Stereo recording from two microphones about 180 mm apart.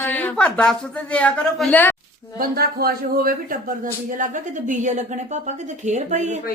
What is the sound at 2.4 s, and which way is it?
A man's voice, 55° right (ahead or behind).